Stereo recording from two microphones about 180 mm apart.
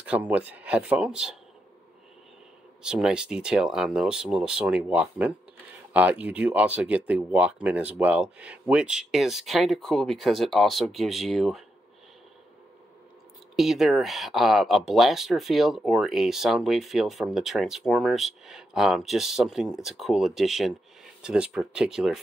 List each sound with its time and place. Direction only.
0.0 s speech: 5° right (ahead or behind)
2.8 s speech: 5° right (ahead or behind)
13.6 s speech: centre (ahead or behind)